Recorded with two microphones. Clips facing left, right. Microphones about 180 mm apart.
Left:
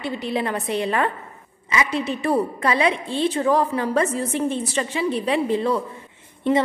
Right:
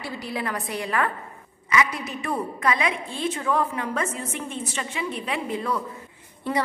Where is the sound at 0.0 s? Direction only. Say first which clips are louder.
Left 6 dB; 20° left (ahead or behind).